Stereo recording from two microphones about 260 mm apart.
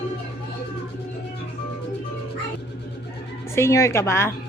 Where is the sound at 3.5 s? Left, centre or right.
Centre.